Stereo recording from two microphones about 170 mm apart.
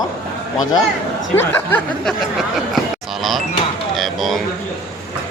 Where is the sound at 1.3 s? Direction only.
10° left (ahead or behind).